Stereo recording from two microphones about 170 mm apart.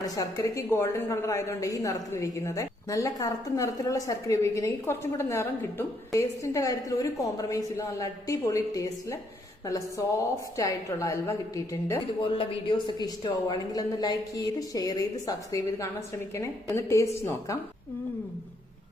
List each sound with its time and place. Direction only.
0.0 s a woman's voice: 20° left (ahead or behind)
10.6 s a woman's voice: 20° left (ahead or behind)
12.2 s a woman's voice: 30° left (ahead or behind)